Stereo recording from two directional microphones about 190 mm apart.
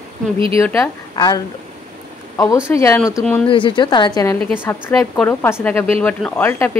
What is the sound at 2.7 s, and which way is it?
Speech, 15° left (ahead or behind).